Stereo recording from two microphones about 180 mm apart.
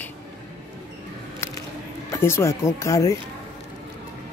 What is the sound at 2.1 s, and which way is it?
Speech, 15° left (ahead or behind).